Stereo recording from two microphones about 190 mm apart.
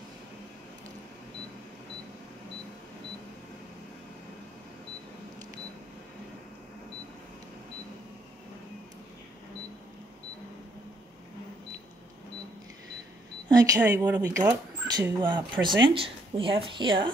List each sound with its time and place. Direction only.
13.5 s speech: 15° right (ahead or behind)